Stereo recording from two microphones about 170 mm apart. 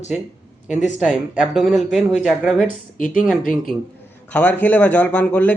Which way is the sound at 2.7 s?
55° left (ahead or behind).